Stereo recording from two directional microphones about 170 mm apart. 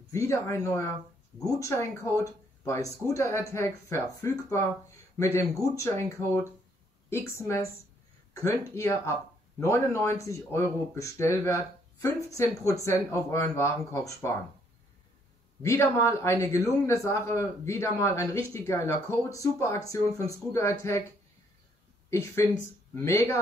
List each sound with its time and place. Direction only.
0.1 s a man's voice: 15° left (ahead or behind)
7.1 s a man's voice: 15° left (ahead or behind)
15.6 s a man's voice: 15° left (ahead or behind)
22.1 s a man's voice: 15° left (ahead or behind)